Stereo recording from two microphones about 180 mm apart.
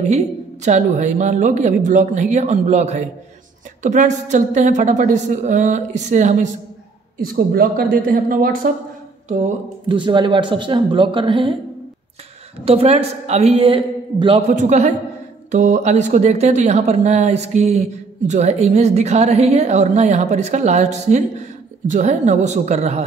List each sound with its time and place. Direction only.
0.1 s a woman's voice: 40° right (ahead or behind)
9.8 s speech: 25° right (ahead or behind)
12.6 s speech: 35° right (ahead or behind)
14.5 s speech: 40° right (ahead or behind)